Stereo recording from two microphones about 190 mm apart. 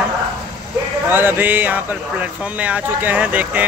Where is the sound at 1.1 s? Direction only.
10° right (ahead or behind).